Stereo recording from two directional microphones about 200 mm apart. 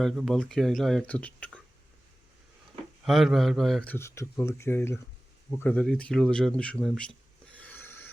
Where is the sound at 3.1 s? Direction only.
Centre (ahead or behind).